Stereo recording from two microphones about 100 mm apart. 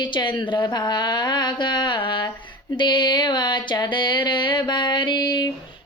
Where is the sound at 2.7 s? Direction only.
50° left (ahead or behind).